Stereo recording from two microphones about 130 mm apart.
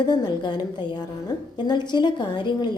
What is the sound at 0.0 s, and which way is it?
A woman's voice, 30° left (ahead or behind).